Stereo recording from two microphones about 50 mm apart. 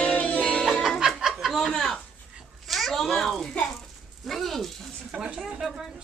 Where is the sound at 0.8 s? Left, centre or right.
Centre.